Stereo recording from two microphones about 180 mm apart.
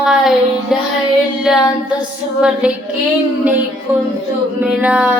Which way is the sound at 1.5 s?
5° right (ahead or behind).